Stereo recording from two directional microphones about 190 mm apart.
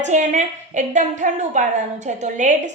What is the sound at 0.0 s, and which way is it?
A woman's voice, 40° right (ahead or behind).